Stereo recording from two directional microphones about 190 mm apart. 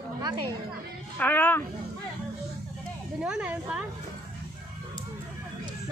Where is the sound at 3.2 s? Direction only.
5° right (ahead or behind).